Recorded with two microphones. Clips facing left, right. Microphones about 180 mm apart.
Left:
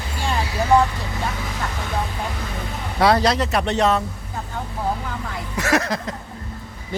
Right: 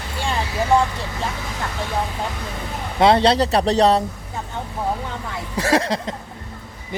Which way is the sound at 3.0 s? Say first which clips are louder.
Right 3 dB; 25° right (ahead or behind).